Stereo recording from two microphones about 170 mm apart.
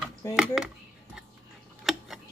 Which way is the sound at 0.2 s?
15° left (ahead or behind).